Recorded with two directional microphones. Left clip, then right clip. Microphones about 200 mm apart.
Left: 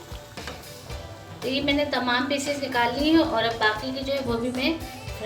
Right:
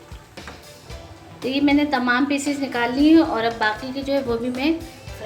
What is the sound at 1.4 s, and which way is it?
A woman's voice, 50° right (ahead or behind).